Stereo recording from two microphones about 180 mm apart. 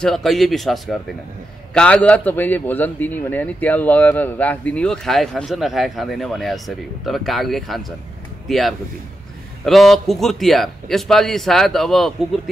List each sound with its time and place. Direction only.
0.0 s a man's voice: centre (ahead or behind)